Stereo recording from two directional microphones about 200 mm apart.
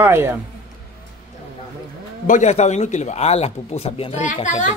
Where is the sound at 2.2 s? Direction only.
35° left (ahead or behind).